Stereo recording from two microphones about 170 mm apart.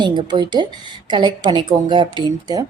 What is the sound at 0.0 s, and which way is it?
A woman's voice, 25° right (ahead or behind).